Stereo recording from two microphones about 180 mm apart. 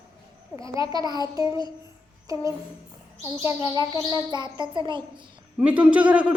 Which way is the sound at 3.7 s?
20° right (ahead or behind).